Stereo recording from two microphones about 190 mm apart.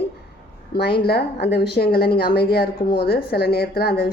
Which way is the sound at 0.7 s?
55° left (ahead or behind).